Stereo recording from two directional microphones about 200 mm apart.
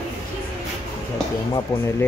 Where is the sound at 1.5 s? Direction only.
15° left (ahead or behind).